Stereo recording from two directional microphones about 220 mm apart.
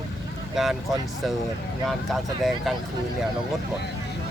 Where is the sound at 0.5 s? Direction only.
Centre (ahead or behind).